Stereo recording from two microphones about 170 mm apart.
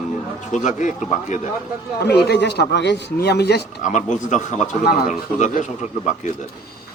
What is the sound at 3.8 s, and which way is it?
A man's voice, 45° left (ahead or behind).